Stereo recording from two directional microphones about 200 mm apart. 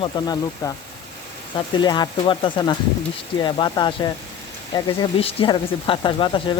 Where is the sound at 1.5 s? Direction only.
20° left (ahead or behind).